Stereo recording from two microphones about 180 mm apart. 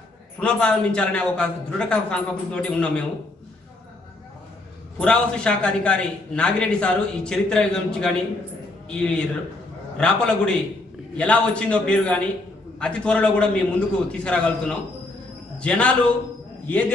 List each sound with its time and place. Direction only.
0.4 s a man's voice: 5° left (ahead or behind)
4.9 s a man's voice: 5° left (ahead or behind)